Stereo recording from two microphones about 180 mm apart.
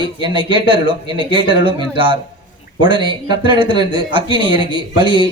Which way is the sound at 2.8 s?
25° right (ahead or behind).